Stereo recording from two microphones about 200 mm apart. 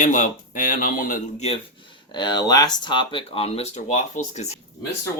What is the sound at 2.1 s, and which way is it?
Speech, 20° left (ahead or behind).